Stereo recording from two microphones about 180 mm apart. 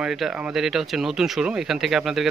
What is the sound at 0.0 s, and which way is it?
Speech, 5° right (ahead or behind).